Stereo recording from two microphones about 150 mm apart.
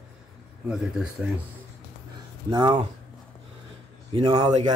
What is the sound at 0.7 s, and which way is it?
Speech, 5° right (ahead or behind).